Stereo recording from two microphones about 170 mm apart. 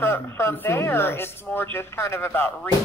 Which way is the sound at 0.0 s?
15° left (ahead or behind).